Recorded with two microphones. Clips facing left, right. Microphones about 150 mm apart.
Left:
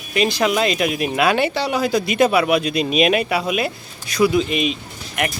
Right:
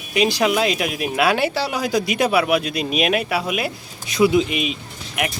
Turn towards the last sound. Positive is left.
turn(degrees=-10)  # may be behind; listen again after turning